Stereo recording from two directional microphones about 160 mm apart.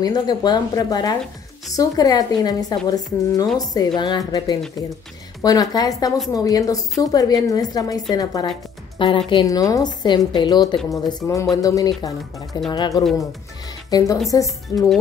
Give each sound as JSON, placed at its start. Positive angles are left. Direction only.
{"t": 0.0, "sound": "a woman's voice", "side_deg": 25}